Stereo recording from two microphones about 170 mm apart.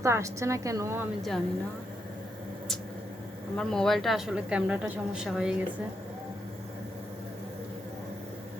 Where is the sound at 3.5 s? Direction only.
5° left (ahead or behind).